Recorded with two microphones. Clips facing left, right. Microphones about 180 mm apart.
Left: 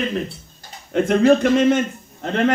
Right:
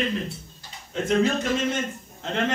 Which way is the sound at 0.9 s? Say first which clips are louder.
Left 8 dB; 60° left (ahead or behind).